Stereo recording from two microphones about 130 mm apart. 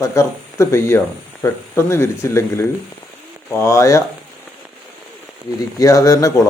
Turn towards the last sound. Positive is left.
turn(degrees=25)  # may be behind; listen again after turning